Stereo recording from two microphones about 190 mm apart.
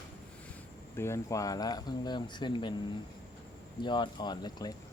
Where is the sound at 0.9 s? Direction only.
15° left (ahead or behind).